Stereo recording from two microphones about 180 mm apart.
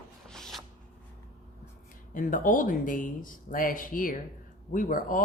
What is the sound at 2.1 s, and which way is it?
A man's voice, 50° left (ahead or behind).